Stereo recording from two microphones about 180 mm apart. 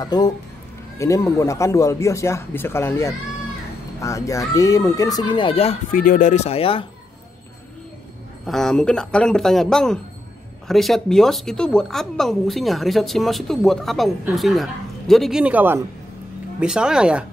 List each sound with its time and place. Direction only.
0.0 s speech: 20° left (ahead or behind)
5.9 s speech: 50° left (ahead or behind); by 6.9 s 30° left (ahead or behind)
8.5 s speech: 5° left (ahead or behind)